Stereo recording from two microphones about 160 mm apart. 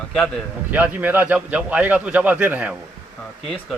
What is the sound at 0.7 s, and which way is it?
A man's voice, 10° right (ahead or behind).